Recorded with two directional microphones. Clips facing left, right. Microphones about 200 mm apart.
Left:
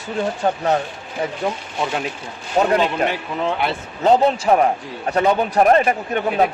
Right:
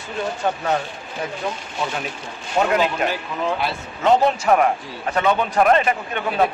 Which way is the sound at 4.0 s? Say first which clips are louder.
Left 2 dB; 30° left (ahead or behind).